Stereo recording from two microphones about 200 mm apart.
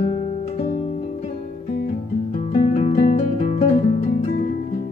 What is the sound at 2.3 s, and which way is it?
Guitar, 30° left (ahead or behind).